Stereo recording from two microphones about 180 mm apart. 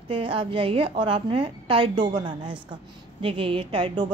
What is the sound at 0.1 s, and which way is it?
A woman's voice, 30° right (ahead or behind).